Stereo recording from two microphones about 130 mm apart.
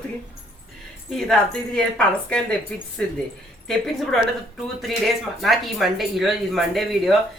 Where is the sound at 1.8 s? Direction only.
5° left (ahead or behind).